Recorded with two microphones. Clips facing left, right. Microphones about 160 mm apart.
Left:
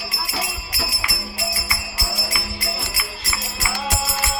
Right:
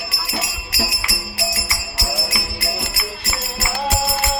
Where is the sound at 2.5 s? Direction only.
70° right (ahead or behind).